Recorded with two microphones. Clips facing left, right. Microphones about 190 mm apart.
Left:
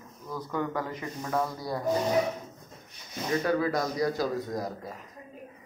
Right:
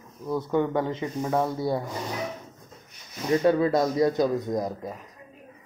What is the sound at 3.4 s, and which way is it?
Speech, 25° right (ahead or behind).